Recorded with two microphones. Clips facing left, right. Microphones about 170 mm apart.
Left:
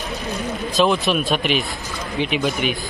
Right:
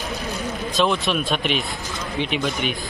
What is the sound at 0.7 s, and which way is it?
Speech, centre (ahead or behind).